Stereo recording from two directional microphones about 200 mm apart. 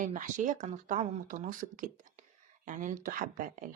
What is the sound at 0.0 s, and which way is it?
Speech, 40° right (ahead or behind).